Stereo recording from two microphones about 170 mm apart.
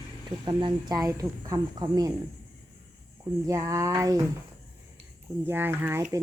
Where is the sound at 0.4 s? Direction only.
25° right (ahead or behind).